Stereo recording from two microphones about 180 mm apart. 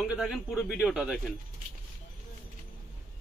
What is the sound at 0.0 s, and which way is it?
Speech, 5° right (ahead or behind).